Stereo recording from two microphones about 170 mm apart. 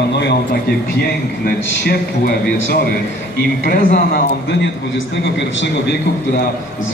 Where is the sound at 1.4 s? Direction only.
65° left (ahead or behind).